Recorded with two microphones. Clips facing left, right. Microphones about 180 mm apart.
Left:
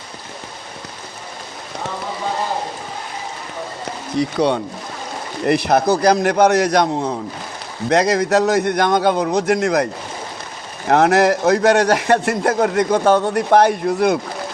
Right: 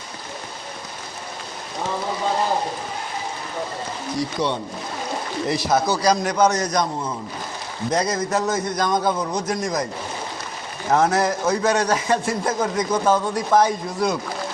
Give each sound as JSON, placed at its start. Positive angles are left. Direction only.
{"t": 4.2, "sound": "a man's voice", "side_deg": 65}
{"t": 10.8, "sound": "a man's voice", "side_deg": 70}